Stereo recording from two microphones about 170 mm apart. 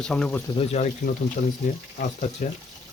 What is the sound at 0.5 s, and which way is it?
Speech, 35° left (ahead or behind).